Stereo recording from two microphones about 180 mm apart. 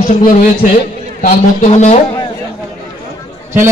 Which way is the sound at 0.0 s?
50° left (ahead or behind).